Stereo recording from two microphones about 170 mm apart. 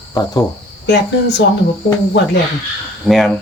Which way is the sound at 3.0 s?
Centre (ahead or behind).